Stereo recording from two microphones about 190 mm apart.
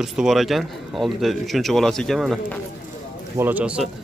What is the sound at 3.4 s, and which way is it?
Speech, 10° right (ahead or behind).